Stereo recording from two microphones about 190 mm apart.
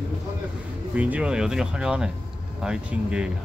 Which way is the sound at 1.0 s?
5° right (ahead or behind).